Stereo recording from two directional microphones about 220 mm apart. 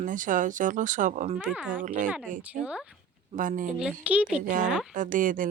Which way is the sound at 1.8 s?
35° right (ahead or behind).